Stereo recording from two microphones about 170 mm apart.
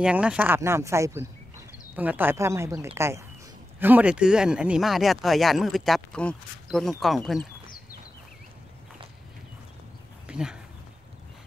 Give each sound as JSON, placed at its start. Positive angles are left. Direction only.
{"t": 0.0, "sound": "speech", "side_deg": -5}
{"t": 10.2, "sound": "speech", "side_deg": -5}